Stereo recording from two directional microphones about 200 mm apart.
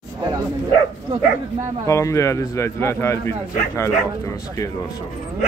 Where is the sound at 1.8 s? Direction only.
15° left (ahead or behind).